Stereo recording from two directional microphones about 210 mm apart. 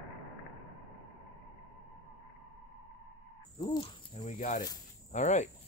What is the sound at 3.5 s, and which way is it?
Speech, 20° left (ahead or behind).